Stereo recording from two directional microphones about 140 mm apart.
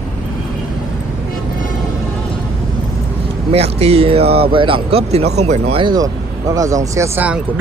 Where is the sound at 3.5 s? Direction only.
45° right (ahead or behind).